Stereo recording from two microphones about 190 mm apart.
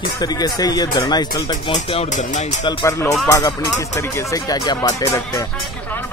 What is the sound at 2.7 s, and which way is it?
Speech, 20° left (ahead or behind).